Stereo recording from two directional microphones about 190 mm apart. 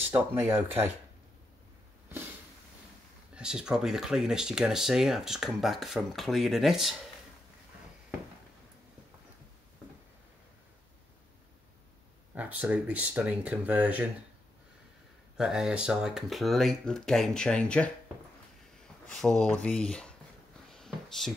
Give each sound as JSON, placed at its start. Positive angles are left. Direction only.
{"t": 0.1, "sound": "speech", "side_deg": -10}
{"t": 3.3, "sound": "speech", "side_deg": -5}
{"t": 12.4, "sound": "speech", "side_deg": -10}
{"t": 15.3, "sound": "speech", "side_deg": -5}
{"t": 19.0, "sound": "speech", "side_deg": 0}
{"t": 20.7, "sound": "a sound", "side_deg": 0}